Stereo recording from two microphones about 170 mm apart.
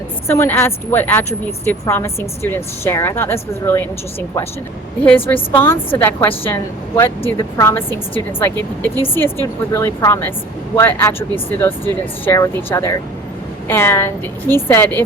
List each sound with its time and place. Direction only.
0.3 s a woman's voice: 15° left (ahead or behind)
4.9 s a woman's voice: 10° left (ahead or behind)